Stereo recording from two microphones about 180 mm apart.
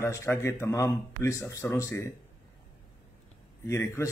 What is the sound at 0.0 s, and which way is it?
A man's voice, 15° left (ahead or behind).